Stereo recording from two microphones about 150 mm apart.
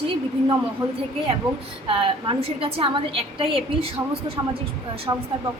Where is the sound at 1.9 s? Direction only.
35° right (ahead or behind).